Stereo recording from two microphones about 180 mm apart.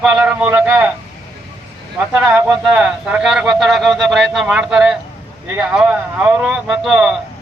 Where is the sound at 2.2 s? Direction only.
10° right (ahead or behind).